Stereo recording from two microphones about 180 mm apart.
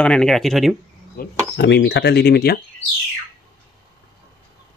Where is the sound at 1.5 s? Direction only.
75° left (ahead or behind).